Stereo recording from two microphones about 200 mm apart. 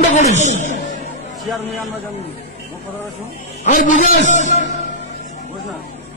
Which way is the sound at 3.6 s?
40° left (ahead or behind).